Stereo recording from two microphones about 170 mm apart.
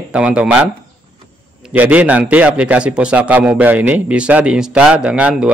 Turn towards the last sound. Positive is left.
turn(degrees=-5)  # may be behind; listen again after turning